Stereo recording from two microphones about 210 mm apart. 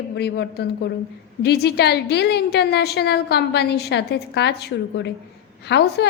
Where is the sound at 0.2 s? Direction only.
50° left (ahead or behind).